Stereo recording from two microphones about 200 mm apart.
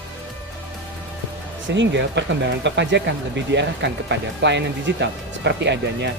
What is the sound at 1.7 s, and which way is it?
Speech, 60° right (ahead or behind).